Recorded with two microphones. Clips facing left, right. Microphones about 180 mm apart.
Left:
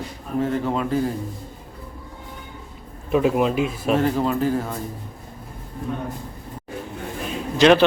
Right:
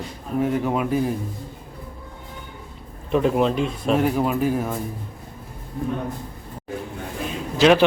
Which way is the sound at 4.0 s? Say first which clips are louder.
Even; 10° right (ahead or behind).